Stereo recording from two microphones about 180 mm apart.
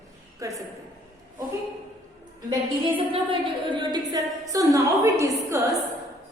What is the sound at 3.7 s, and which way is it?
A woman's voice, 25° right (ahead or behind).